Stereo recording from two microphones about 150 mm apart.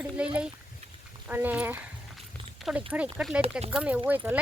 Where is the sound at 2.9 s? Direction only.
10° right (ahead or behind).